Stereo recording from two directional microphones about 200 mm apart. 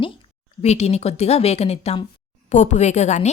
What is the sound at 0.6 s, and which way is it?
A woman's voice, 35° left (ahead or behind).